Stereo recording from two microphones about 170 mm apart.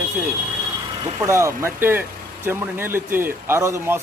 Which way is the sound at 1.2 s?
15° right (ahead or behind).